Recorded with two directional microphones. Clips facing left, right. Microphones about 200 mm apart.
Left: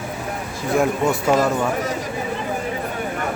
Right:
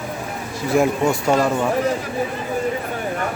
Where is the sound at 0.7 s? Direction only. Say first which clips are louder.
Right 2 dB; 5° right (ahead or behind).